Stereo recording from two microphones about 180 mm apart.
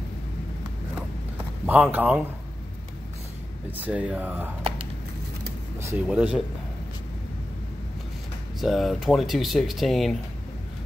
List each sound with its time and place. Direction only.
1.7 s speech: 10° right (ahead or behind)
3.7 s speech: 10° right (ahead or behind)
5.8 s speech: 15° right (ahead or behind)
8.5 s speech: centre (ahead or behind)